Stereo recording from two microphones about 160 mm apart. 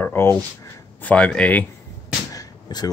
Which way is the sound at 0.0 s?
15° left (ahead or behind).